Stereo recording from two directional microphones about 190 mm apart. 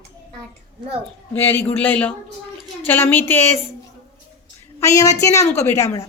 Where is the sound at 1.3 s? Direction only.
10° left (ahead or behind).